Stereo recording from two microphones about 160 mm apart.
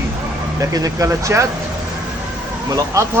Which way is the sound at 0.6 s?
20° right (ahead or behind).